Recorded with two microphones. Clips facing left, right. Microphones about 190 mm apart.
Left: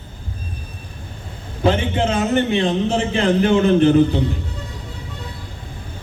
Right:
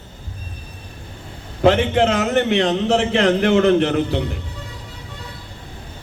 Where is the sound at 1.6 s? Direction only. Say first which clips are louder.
Right 3 dB; 70° right (ahead or behind).